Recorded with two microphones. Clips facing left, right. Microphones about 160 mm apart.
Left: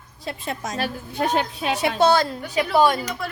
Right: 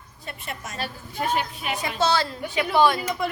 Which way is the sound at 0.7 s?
70° left (ahead or behind).